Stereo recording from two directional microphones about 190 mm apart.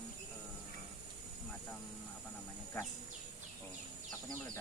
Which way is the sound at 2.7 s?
15° left (ahead or behind).